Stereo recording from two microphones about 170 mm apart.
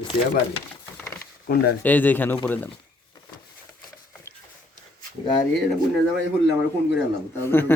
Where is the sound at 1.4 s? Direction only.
65° left (ahead or behind).